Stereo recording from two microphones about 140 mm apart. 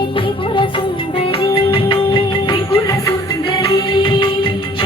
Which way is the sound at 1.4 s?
40° left (ahead or behind).